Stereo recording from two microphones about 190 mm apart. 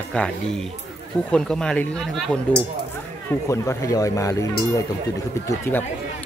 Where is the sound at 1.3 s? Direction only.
5° left (ahead or behind).